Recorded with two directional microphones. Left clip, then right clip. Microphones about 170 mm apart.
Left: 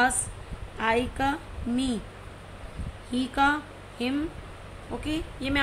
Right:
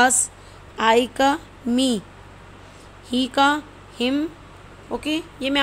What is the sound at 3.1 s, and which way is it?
A woman's voice, 60° right (ahead or behind).